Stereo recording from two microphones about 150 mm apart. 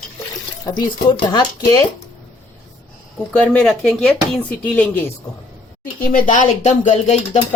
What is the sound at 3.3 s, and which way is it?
Speech, 10° left (ahead or behind).